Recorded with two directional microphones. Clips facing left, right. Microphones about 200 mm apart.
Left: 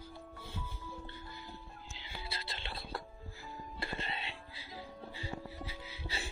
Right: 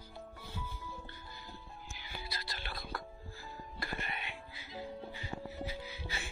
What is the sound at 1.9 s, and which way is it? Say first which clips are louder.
Music: even; 25° left (ahead or behind).